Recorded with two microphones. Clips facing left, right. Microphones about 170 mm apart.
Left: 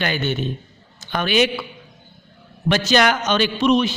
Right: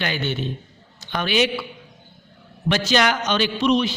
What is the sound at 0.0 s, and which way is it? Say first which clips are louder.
Speech: left 3 dB; 50° left (ahead or behind).